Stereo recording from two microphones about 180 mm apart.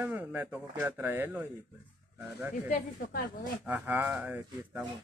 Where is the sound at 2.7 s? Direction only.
55° left (ahead or behind).